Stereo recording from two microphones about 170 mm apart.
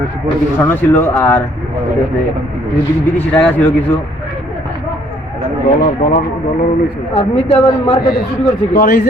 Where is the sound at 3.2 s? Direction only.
5° left (ahead or behind).